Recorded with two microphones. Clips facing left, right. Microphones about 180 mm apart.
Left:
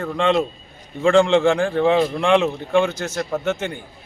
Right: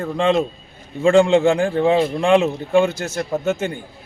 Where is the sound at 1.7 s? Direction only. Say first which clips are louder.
Right 1 dB; 25° right (ahead or behind).